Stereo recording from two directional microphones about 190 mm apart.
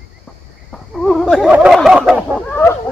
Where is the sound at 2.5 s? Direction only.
10° left (ahead or behind).